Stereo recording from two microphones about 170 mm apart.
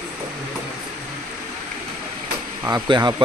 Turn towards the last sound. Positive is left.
turn(degrees=-25)  # may be behind; listen again after turning